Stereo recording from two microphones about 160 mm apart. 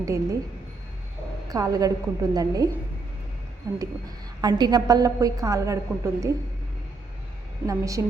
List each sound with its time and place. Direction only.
0.0 s a woman's voice: 20° right (ahead or behind)
1.5 s a woman's voice: 20° right (ahead or behind)
3.6 s a woman's voice: 20° right (ahead or behind)
7.7 s a woman's voice: 20° right (ahead or behind)